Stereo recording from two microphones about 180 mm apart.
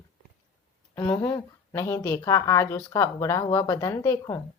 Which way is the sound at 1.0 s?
15° left (ahead or behind).